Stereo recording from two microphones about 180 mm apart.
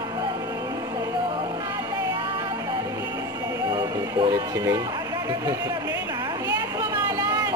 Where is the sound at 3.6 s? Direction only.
20° right (ahead or behind).